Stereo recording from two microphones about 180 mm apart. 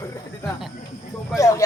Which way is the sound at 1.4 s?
15° left (ahead or behind).